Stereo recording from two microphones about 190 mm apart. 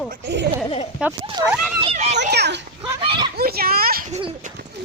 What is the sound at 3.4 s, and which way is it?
Speech, 55° right (ahead or behind).